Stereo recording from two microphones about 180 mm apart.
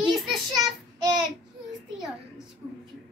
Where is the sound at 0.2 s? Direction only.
Centre (ahead or behind).